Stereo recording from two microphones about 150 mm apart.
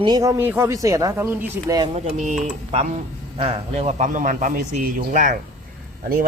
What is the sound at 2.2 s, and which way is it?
A man's voice, 55° right (ahead or behind).